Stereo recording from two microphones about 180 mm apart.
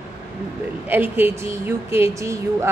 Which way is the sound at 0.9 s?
10° right (ahead or behind).